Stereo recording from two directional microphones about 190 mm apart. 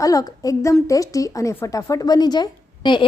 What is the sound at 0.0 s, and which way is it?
A woman's voice, 20° left (ahead or behind).